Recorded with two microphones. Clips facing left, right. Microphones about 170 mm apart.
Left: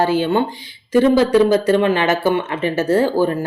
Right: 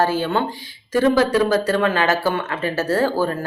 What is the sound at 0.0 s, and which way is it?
Speech, 15° left (ahead or behind).